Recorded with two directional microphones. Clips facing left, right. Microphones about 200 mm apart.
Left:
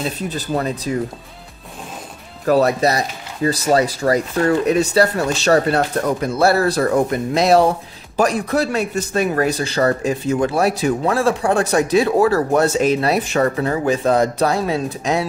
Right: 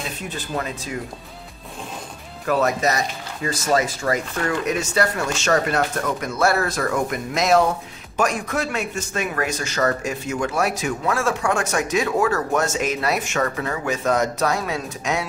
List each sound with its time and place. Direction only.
0.0 s a man's voice: 35° left (ahead or behind)
2.4 s a man's voice: 35° left (ahead or behind)